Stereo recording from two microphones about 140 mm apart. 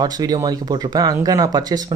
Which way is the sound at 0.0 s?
25° right (ahead or behind).